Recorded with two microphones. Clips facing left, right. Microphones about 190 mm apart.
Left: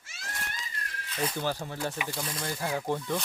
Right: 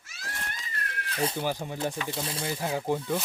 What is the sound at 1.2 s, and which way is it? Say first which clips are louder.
Speech: right 2 dB; 25° right (ahead or behind).